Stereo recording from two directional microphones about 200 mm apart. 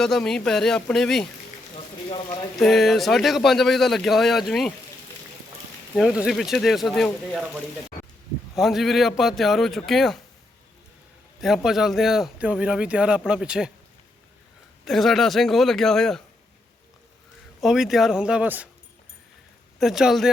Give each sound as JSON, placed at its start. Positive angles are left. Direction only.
{"t": 0.0, "sound": "speech", "side_deg": 0}
{"t": 1.7, "sound": "speech", "side_deg": 25}
{"t": 2.6, "sound": "speech", "side_deg": 0}
{"t": 6.0, "sound": "speech", "side_deg": 0}
{"t": 8.5, "sound": "speech", "side_deg": 0}
{"t": 11.3, "sound": "speech", "side_deg": 0}
{"t": 14.8, "sound": "speech", "side_deg": 0}
{"t": 17.6, "sound": "speech", "side_deg": 0}
{"t": 19.8, "sound": "speech", "side_deg": 0}